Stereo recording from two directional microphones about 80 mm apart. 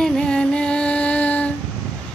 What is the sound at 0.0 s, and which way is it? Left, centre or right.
Music, centre.